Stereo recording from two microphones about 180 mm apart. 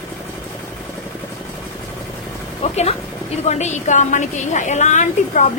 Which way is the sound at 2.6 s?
35° left (ahead or behind).